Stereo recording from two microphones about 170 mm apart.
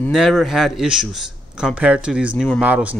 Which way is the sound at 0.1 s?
Centre (ahead or behind).